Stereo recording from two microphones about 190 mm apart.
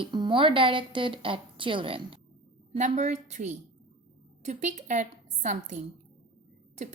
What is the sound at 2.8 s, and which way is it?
A woman's voice, 40° right (ahead or behind).